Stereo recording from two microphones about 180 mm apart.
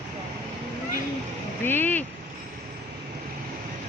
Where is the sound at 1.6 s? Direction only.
10° left (ahead or behind).